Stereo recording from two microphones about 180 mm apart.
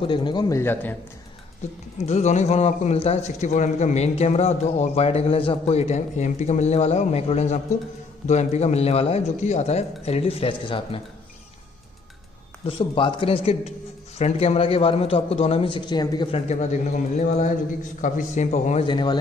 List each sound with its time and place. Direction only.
0.0 s speech: 25° left (ahead or behind)
2.0 s a man's voice: 40° left (ahead or behind)
12.6 s a man's voice: 30° left (ahead or behind)
18.9 s speech: 25° left (ahead or behind)